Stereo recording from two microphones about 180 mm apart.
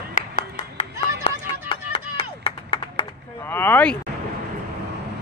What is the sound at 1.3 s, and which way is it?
Music, 30° left (ahead or behind).